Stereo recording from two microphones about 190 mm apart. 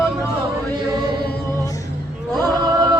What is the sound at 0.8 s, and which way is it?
Chant, 55° left (ahead or behind).